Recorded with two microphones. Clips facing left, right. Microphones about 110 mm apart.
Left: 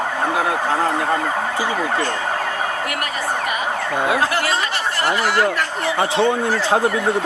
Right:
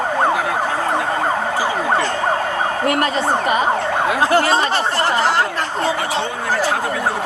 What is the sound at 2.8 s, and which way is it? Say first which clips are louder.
Speech: right 6 dB; 30° right (ahead or behind).